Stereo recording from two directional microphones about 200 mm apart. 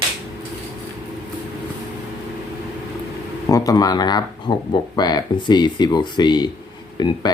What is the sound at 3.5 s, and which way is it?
Speech, 20° left (ahead or behind).